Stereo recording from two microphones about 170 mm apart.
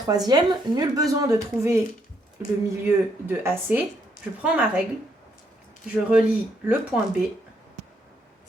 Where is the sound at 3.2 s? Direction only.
10° right (ahead or behind).